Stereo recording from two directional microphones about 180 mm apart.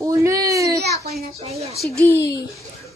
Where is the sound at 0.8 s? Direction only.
65° right (ahead or behind).